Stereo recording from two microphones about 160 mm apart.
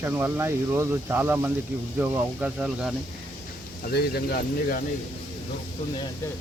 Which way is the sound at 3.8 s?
90° left.